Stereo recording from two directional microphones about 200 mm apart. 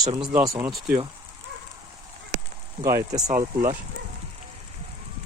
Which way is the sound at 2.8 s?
15° right (ahead or behind).